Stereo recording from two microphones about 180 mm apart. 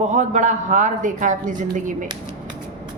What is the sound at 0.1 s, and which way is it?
A woman's voice, 40° right (ahead or behind).